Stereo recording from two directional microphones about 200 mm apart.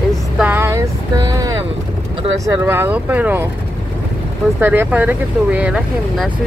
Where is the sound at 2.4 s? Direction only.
10° right (ahead or behind).